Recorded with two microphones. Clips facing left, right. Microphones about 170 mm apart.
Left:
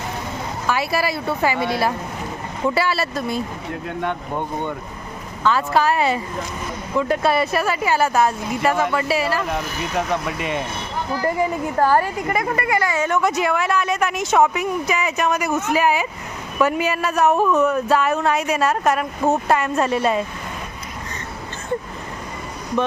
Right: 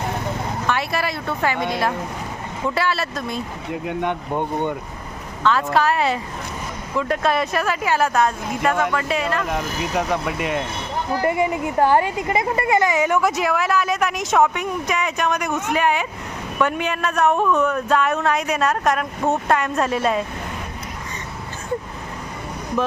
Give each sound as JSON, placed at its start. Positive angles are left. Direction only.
{"t": 0.7, "sound": "speech", "side_deg": 5}
{"t": 3.7, "sound": "speech", "side_deg": -15}
{"t": 5.4, "sound": "speech", "side_deg": 5}
{"t": 11.2, "sound": "speech", "side_deg": -15}
{"t": 13.1, "sound": "speech", "side_deg": 0}